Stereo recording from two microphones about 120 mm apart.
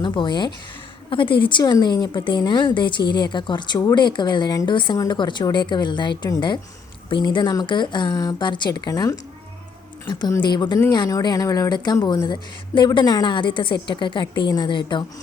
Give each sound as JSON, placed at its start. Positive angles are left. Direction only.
{"t": 0.0, "sound": "speech", "side_deg": 40}